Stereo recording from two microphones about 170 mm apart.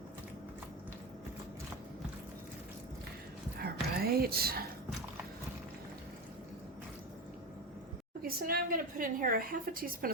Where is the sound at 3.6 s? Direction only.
65° right (ahead or behind).